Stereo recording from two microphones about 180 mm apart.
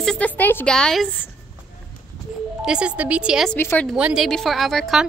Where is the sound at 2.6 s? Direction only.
5° right (ahead or behind).